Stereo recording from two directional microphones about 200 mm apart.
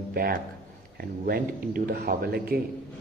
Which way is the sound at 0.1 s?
50° right (ahead or behind).